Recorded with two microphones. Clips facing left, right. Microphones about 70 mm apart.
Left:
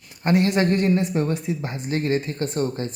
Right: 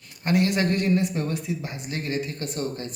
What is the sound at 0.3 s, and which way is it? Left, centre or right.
A man's voice, left.